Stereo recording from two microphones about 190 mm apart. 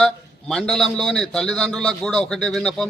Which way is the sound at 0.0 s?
Centre (ahead or behind).